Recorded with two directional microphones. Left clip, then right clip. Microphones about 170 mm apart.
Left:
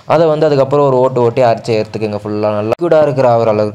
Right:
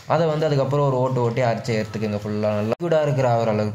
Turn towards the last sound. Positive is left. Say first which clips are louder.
# left 10 dB
turn(degrees=35)  # may be behind; listen again after turning